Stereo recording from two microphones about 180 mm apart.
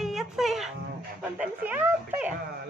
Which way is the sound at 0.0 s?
Centre (ahead or behind).